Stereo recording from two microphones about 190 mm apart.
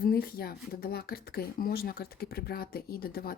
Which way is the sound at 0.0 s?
55° left (ahead or behind).